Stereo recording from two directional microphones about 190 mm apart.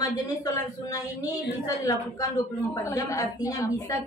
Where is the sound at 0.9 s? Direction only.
20° left (ahead or behind).